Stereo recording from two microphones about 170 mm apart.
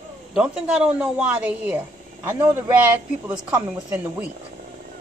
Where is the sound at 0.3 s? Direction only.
5° right (ahead or behind).